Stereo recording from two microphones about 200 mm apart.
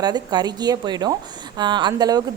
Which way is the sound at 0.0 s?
20° right (ahead or behind).